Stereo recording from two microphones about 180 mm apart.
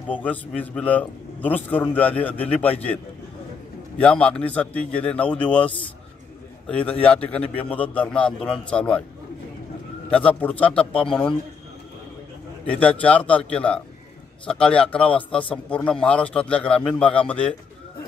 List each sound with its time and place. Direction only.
0.1 s a man's voice: 10° left (ahead or behind)
4.0 s a man's voice: 5° left (ahead or behind)
6.7 s a man's voice: 10° left (ahead or behind)
10.0 s a man's voice: 5° left (ahead or behind)
12.7 s a man's voice: 5° left (ahead or behind)